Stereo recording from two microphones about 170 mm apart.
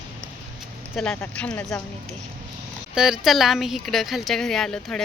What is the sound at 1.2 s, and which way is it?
Speech, 10° left (ahead or behind).